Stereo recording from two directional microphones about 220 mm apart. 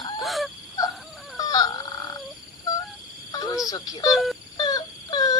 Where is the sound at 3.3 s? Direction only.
20° left (ahead or behind).